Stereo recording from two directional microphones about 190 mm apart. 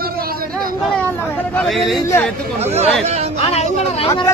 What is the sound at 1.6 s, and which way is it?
Speech, centre (ahead or behind).